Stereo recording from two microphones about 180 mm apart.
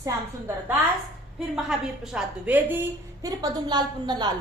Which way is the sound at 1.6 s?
5° right (ahead or behind).